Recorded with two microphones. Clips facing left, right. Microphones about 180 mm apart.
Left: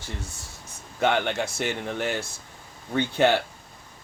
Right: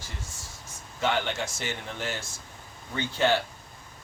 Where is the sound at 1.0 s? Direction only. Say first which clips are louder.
Left 4 dB; 60° left (ahead or behind).